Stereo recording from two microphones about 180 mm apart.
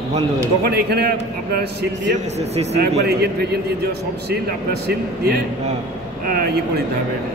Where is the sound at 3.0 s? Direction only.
65° right (ahead or behind).